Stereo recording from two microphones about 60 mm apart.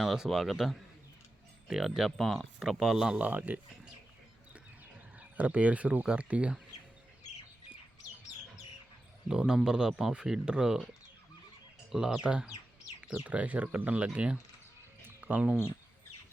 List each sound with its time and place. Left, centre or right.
0.0 s speech: centre
2.6 s speech: centre
3.2 s speech: right
5.4 s speech: right
9.3 s speech: centre
11.9 s speech: centre
13.2 s speech: right
15.0 s cricket: right